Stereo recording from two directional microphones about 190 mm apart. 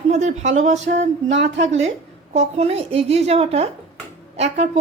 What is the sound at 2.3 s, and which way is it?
A woman's voice, 35° right (ahead or behind).